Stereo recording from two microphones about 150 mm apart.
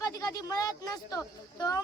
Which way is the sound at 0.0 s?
25° left (ahead or behind).